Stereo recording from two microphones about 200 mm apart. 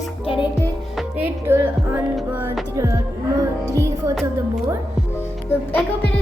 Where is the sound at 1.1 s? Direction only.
10° right (ahead or behind).